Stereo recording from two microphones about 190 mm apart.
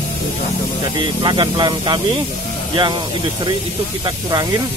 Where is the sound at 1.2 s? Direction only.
25° right (ahead or behind).